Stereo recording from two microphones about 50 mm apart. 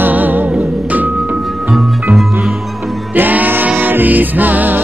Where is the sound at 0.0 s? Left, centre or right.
Right.